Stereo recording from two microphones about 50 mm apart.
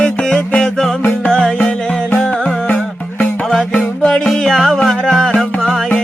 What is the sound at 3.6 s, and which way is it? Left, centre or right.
Music, left.